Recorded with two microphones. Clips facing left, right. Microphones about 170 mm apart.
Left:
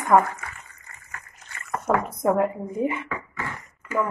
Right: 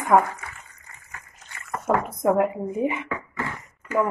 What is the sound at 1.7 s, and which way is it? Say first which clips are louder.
Speech: even; centre (ahead or behind).